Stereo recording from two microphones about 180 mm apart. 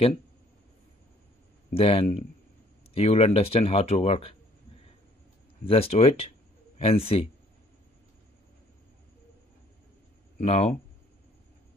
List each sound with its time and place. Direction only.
1.7 s speech: 30° left (ahead or behind)
5.6 s speech: 30° left (ahead or behind)
10.4 s speech: 35° left (ahead or behind)